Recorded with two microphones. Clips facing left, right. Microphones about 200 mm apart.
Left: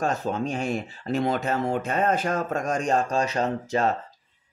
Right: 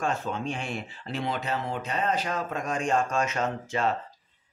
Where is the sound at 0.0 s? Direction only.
40° left (ahead or behind).